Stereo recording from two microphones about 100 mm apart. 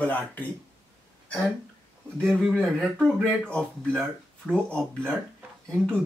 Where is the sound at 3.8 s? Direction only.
20° right (ahead or behind).